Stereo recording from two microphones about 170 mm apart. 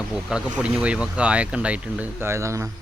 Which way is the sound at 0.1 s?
5° right (ahead or behind).